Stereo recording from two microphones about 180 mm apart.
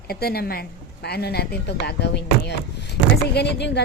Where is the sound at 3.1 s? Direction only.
65° left (ahead or behind).